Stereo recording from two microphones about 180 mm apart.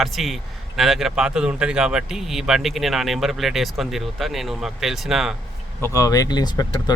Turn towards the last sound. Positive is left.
turn(degrees=20)  # may be behind; listen again after turning